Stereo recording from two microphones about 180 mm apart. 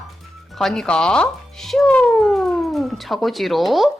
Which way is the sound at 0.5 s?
Centre (ahead or behind).